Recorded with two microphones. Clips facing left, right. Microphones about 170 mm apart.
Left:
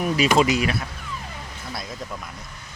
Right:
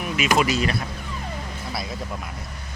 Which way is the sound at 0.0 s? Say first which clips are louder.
Left 3 dB; 35° left (ahead or behind).